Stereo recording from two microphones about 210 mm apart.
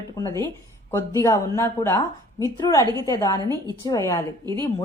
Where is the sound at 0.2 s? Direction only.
15° left (ahead or behind).